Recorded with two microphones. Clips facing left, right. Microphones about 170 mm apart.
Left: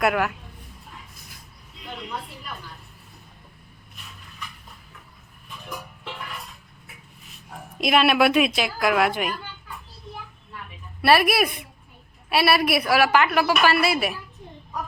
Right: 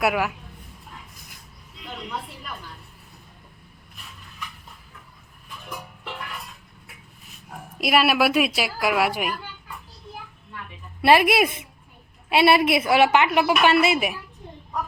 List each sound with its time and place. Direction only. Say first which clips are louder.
0.0 s a man's voice: left 1 dB; 5° right (ahead or behind)
7.8 s a woman's voice: left 1 dB; 5° right (ahead or behind)
11.0 s a woman's voice: right 2 dB; 20° right (ahead or behind)